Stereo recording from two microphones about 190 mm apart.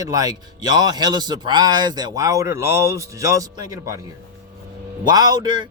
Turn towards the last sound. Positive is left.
turn(degrees=-20)  # may be behind; listen again after turning